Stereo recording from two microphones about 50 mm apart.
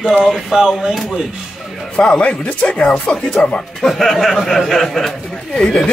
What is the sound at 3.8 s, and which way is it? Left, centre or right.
Speech, centre.